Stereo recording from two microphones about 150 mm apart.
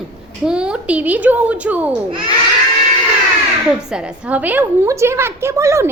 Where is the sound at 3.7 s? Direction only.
5° right (ahead or behind).